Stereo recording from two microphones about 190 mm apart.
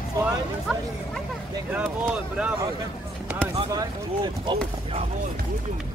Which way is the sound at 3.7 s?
20° right (ahead or behind).